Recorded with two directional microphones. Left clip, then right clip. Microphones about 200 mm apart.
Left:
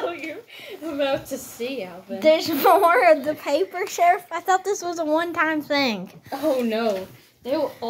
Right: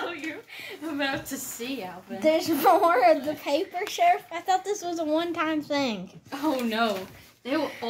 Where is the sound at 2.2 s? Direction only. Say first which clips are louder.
Left 5 dB; 20° left (ahead or behind).